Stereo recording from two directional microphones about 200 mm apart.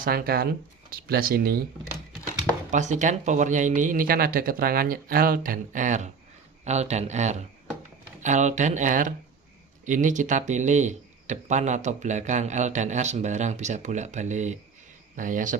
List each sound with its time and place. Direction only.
0.0 s speech: 50° right (ahead or behind)
2.7 s speech: 40° right (ahead or behind)